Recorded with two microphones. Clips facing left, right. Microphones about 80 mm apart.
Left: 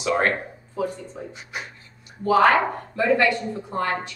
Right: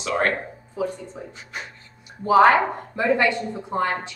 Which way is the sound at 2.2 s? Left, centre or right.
Right.